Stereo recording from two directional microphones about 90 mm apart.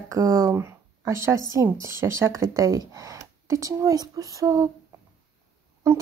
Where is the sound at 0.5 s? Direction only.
30° right (ahead or behind).